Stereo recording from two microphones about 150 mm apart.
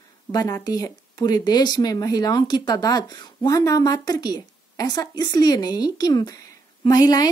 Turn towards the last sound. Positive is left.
turn(degrees=25)  # may be behind; listen again after turning